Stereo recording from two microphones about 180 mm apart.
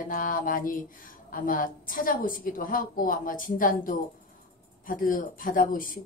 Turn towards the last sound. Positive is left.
turn(degrees=50)  # may be behind; listen again after turning